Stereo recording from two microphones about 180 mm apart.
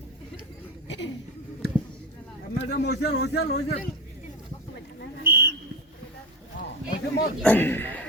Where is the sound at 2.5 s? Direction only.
70° left (ahead or behind).